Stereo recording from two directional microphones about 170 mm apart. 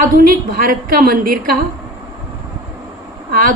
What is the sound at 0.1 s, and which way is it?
A woman's voice, 60° right (ahead or behind).